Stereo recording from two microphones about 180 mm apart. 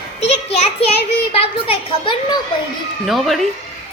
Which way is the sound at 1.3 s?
30° left (ahead or behind).